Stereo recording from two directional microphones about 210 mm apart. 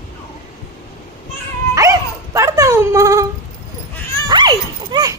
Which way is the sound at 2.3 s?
15° right (ahead or behind).